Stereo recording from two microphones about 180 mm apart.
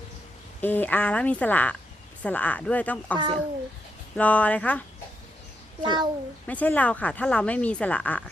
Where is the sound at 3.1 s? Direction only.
25° right (ahead or behind).